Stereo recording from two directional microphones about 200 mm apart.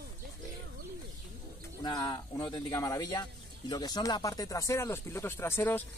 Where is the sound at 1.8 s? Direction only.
20° left (ahead or behind).